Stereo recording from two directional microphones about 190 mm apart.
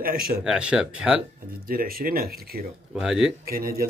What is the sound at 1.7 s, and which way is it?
Speech, 50° right (ahead or behind).